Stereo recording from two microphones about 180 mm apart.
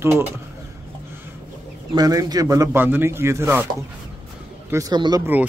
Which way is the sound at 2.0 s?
20° right (ahead or behind).